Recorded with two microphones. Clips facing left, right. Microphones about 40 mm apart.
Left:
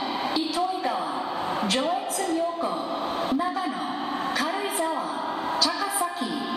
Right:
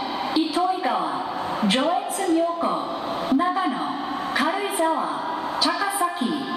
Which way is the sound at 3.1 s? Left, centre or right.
Centre.